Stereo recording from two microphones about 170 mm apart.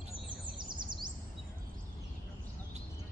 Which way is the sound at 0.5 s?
25° right (ahead or behind).